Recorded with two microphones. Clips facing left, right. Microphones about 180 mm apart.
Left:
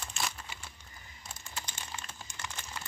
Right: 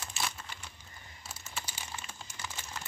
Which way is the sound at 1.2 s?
5° right (ahead or behind).